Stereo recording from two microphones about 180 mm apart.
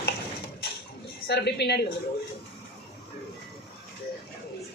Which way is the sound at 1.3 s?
65° left (ahead or behind).